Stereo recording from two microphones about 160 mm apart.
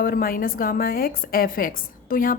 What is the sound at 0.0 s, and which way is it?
A woman's voice, 65° left (ahead or behind).